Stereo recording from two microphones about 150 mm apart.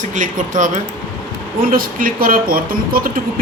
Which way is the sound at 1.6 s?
70° right (ahead or behind).